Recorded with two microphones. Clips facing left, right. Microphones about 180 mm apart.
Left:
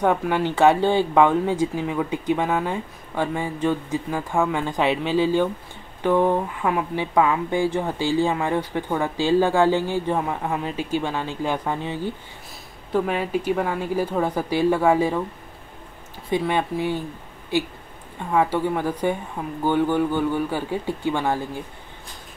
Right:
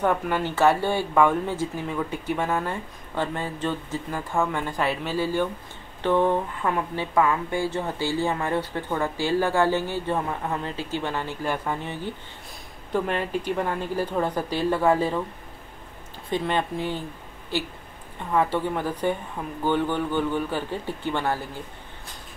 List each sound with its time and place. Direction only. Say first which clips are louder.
0.0 s speech: left 3 dB; 15° left (ahead or behind)
16.3 s speech: left 3 dB; 10° left (ahead or behind)